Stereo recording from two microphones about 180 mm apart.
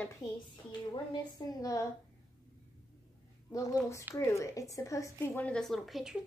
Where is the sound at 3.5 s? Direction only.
15° left (ahead or behind).